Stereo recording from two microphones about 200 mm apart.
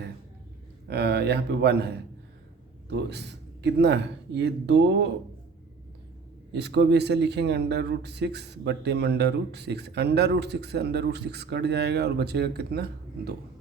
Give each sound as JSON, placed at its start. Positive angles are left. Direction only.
{"t": 0.9, "sound": "a man's voice", "side_deg": -55}
{"t": 2.9, "sound": "a man's voice", "side_deg": -60}
{"t": 6.5, "sound": "a man's voice", "side_deg": -60}